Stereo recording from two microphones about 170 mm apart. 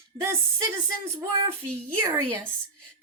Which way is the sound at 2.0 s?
15° right (ahead or behind).